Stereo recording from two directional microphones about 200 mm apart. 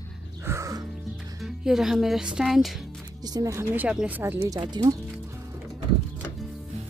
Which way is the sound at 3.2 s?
15° right (ahead or behind).